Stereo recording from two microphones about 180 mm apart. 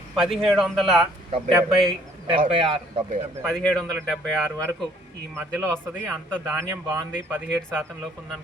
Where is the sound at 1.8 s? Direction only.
30° right (ahead or behind).